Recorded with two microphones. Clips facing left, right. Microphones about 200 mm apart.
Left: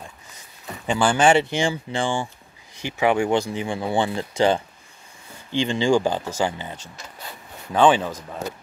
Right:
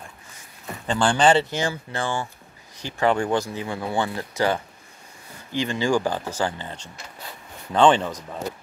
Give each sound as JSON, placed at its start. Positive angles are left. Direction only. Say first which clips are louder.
{"t": 0.8, "sound": "speech", "louder": "left 1 dB", "side_deg": 5}